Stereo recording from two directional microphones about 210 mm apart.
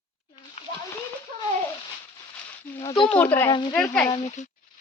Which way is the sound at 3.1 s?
5° left (ahead or behind).